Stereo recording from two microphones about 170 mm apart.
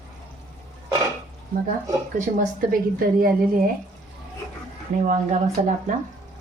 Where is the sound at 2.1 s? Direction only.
50° right (ahead or behind).